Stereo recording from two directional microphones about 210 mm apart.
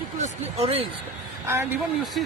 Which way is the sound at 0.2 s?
30° right (ahead or behind).